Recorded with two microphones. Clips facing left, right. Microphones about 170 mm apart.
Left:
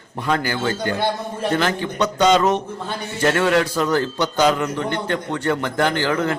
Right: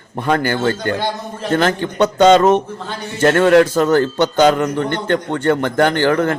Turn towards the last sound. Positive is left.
turn(degrees=-55)  # may be behind; listen again after turning